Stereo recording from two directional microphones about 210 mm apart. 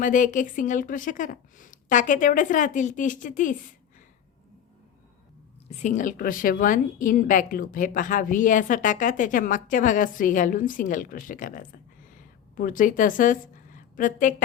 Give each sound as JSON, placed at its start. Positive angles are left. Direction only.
{"t": 0.0, "sound": "a woman's voice", "side_deg": 40}
{"t": 5.6, "sound": "a woman's voice", "side_deg": 35}